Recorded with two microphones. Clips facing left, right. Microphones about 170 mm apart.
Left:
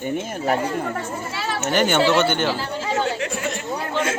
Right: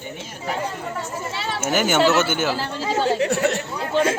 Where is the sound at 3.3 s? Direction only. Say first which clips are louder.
Right 6 dB; 70° right (ahead or behind).